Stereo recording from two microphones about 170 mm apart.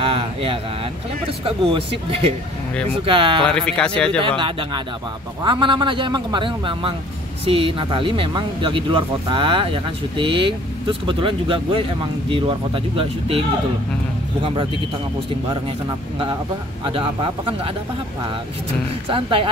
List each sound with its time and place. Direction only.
0.0 s speech: 35° right (ahead or behind)
3.4 s speech: 5° left (ahead or behind)
4.2 s a man's voice: 30° right (ahead or behind)
14.4 s a man's voice: 30° right (ahead or behind)
16.8 s speech: 30° right (ahead or behind)
19.0 s speech: 30° right (ahead or behind)